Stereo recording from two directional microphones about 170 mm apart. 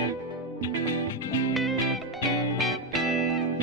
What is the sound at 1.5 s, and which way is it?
Music, centre (ahead or behind).